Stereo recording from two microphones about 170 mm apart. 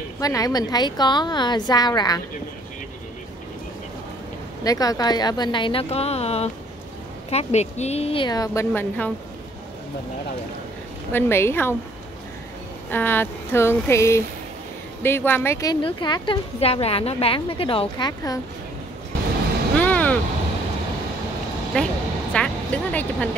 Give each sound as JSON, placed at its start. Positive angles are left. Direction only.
{"t": 0.2, "sound": "a woman's voice", "side_deg": 20}
{"t": 4.6, "sound": "a woman's voice", "side_deg": 20}
{"t": 11.1, "sound": "a sound", "side_deg": 15}
{"t": 12.9, "sound": "a sound", "side_deg": 10}
{"t": 15.0, "sound": "a woman's voice", "side_deg": 10}
{"t": 19.8, "sound": "vehicle", "side_deg": 10}
{"t": 21.7, "sound": "speech", "side_deg": 5}
{"t": 22.3, "sound": "music", "side_deg": 5}